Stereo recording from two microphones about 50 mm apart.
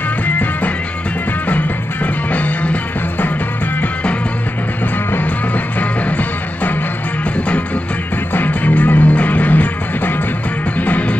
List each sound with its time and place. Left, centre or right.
0.3 s music: left
2.3 s music: left
5.8 s music: left
8.3 s music: left